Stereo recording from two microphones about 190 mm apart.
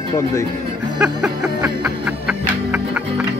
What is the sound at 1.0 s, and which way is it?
Music, 5° right (ahead or behind).